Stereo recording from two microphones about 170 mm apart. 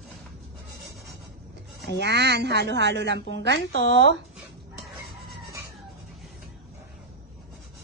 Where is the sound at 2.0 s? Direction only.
80° right.